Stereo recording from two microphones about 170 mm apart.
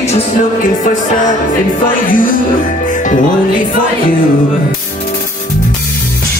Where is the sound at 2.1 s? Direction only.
55° left (ahead or behind).